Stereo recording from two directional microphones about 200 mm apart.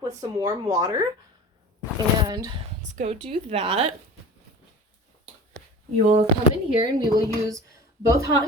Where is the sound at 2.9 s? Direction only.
35° right (ahead or behind).